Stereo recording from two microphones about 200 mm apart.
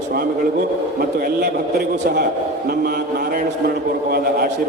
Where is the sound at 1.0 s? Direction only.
50° right (ahead or behind).